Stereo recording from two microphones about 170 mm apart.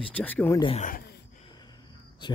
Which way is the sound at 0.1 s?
10° left (ahead or behind).